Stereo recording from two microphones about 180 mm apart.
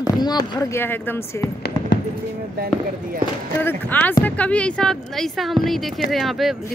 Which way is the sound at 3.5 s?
10° left (ahead or behind).